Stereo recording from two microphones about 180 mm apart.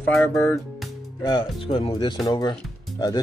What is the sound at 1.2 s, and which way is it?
Speech, 30° left (ahead or behind).